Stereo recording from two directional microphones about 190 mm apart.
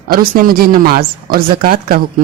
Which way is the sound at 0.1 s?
50° right (ahead or behind).